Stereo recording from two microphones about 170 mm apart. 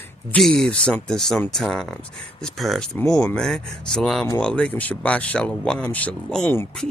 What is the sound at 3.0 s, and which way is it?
Speech, 20° left (ahead or behind).